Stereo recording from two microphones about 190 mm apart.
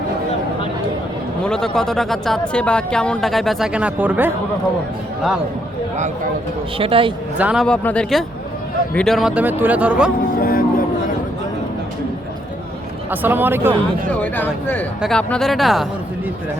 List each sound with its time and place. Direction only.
1.5 s a woman's voice: 5° left (ahead or behind)
6.7 s a man's voice: 30° right (ahead or behind)
7.3 s a woman's voice: 5° right (ahead or behind)
10.4 s vehicle: 50° left (ahead or behind)
13.1 s speech: 10° right (ahead or behind)
14.1 s a woman's voice: 10° left (ahead or behind)